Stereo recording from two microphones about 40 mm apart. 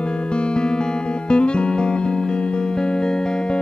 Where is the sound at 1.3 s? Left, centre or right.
Left.